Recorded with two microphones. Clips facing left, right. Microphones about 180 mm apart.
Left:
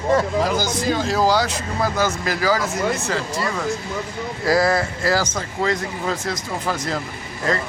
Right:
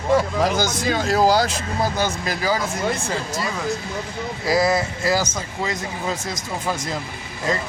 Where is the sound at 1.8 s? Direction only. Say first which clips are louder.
Left 2 dB; 25° right (ahead or behind).